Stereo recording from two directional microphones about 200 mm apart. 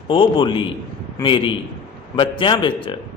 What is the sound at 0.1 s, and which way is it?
A man's voice, 25° left (ahead or behind).